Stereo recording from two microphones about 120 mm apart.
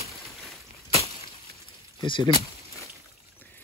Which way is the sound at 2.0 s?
40° left (ahead or behind).